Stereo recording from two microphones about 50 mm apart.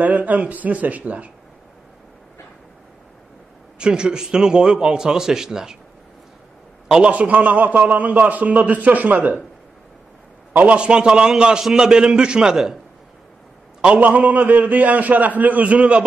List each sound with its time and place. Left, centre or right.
0.0 s a man's voice: right
3.7 s a man's voice: centre
7.1 s a man's voice: right
10.5 s a man's voice: right; by 12.7 s centre
13.9 s a man's voice: right